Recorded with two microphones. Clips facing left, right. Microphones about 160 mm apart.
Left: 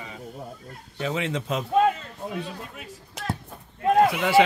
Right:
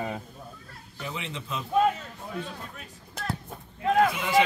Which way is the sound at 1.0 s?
80° left.